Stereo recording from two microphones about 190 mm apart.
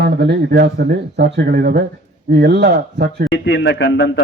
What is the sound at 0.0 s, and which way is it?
Speech, 60° right (ahead or behind).